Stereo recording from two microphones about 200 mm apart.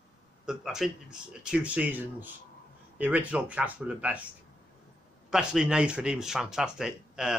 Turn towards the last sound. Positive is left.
turn(degrees=-5)  # may be behind; listen again after turning